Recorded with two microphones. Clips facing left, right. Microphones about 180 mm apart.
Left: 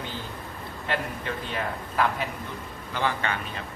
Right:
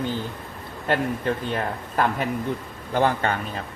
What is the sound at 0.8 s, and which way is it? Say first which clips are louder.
Speech: right 7 dB; 45° right (ahead or behind).